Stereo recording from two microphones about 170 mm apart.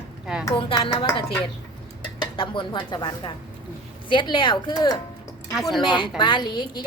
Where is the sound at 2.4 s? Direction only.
30° left (ahead or behind).